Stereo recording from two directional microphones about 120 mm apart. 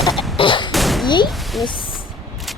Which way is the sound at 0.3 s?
45° left (ahead or behind).